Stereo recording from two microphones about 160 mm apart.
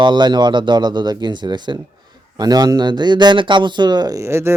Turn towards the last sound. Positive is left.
turn(degrees=-15)  # may be behind; listen again after turning